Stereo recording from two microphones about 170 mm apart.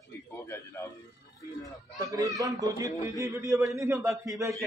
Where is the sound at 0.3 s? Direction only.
15° left (ahead or behind).